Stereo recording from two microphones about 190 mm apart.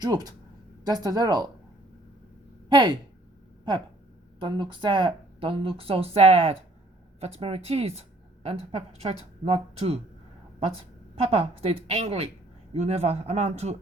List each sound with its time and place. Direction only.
0.0 s speech: 20° right (ahead or behind)
2.6 s speech: 20° right (ahead or behind)
4.4 s a woman's voice: 25° right (ahead or behind)